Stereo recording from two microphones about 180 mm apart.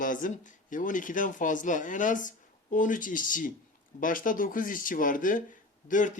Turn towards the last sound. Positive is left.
turn(degrees=45)  # may be behind; listen again after turning